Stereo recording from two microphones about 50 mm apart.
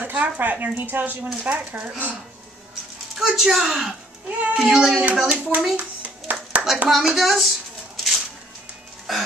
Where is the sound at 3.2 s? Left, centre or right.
Centre.